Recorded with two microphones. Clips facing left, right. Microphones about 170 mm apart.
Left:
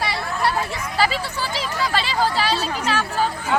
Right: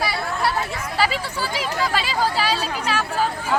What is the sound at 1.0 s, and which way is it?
Speech, 10° right (ahead or behind).